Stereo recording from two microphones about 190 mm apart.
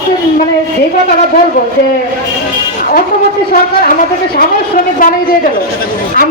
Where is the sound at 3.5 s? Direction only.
50° left (ahead or behind).